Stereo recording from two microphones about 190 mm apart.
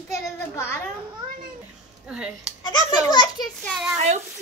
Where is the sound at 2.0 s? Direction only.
5° right (ahead or behind).